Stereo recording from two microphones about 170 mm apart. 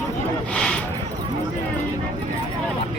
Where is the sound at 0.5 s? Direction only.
5° left (ahead or behind).